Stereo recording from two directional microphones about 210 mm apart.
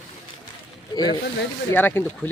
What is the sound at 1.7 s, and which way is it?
Speech, 10° left (ahead or behind).